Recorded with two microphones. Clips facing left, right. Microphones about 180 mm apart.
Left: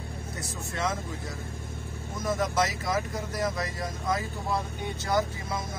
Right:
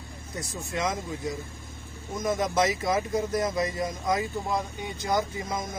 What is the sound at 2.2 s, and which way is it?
A man's voice, 20° right (ahead or behind).